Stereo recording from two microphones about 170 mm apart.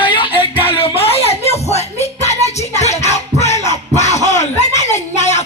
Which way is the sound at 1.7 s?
40° left (ahead or behind).